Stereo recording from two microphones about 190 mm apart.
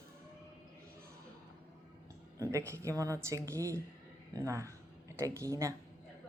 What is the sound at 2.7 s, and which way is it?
Speech, 15° right (ahead or behind).